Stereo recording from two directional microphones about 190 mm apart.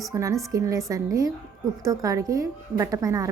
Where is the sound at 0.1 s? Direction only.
15° right (ahead or behind).